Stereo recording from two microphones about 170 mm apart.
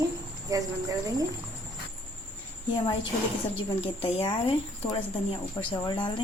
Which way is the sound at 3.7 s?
35° left (ahead or behind).